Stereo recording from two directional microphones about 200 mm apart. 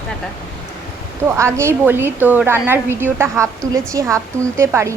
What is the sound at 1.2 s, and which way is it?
A woman's voice, 15° right (ahead or behind).